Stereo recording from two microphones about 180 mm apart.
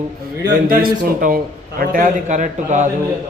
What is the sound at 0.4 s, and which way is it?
A man's voice, 55° right (ahead or behind).